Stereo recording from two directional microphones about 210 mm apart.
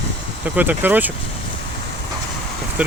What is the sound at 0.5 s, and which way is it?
Speech, 10° right (ahead or behind).